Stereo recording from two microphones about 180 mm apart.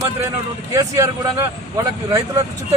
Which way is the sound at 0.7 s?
15° right (ahead or behind).